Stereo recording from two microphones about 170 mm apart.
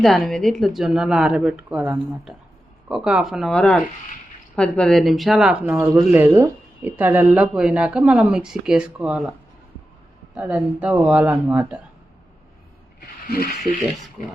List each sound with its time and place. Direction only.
0.0 s speech: centre (ahead or behind)
5.6 s speech: 15° right (ahead or behind)
10.3 s speech: 5° right (ahead or behind)
13.3 s speech: 65° left (ahead or behind)